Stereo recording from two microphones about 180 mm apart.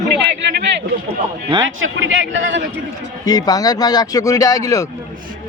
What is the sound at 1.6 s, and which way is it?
A man's voice, 90° right.